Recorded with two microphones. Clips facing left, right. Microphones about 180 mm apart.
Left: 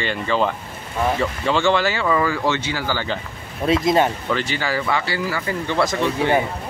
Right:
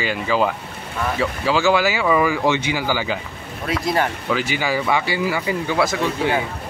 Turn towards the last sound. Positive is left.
turn(degrees=-5)  # may be behind; listen again after turning